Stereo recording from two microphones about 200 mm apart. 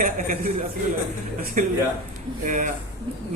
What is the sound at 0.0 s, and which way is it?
Speech, 40° right (ahead or behind).